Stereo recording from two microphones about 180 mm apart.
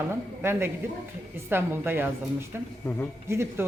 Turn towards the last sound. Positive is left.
turn(degrees=-15)  # may be behind; listen again after turning